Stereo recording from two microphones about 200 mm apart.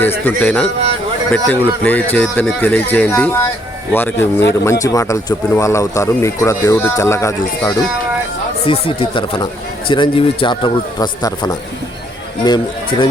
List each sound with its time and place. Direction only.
0.0 s speech: 10° left (ahead or behind)
8.6 s speech: 25° left (ahead or behind)